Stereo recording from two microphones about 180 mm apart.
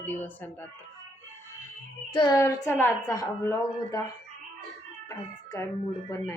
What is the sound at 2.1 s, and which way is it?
A woman's voice, 20° left (ahead or behind).